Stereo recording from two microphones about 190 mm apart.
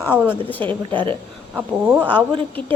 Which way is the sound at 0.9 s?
25° right (ahead or behind).